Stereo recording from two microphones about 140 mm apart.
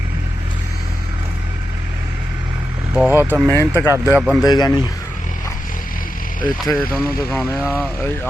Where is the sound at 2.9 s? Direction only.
15° right (ahead or behind).